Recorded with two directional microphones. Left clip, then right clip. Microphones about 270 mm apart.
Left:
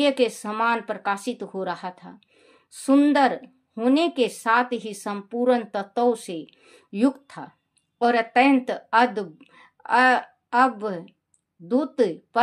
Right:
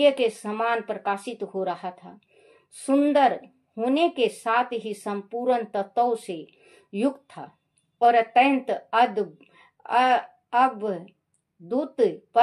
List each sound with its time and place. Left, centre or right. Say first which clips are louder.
0.0 s a woman's voice: right 1 dB; left